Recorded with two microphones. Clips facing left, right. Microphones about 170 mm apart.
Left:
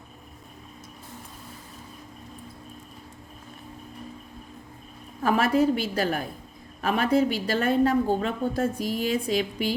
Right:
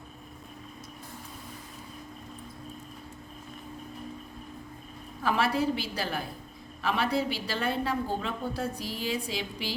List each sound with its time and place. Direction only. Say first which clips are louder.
5.2 s a woman's voice: left 5 dB; 45° left (ahead or behind)